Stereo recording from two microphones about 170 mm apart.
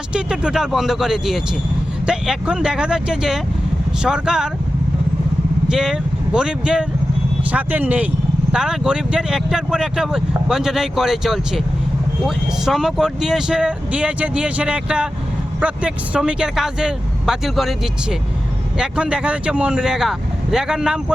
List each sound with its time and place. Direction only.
0.1 s speech: 5° right (ahead or behind)
5.6 s speech: 5° right (ahead or behind)
18.8 s speech: 5° right (ahead or behind)